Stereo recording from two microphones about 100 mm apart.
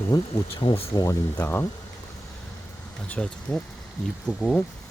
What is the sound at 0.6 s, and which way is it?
Speech, 70° left (ahead or behind).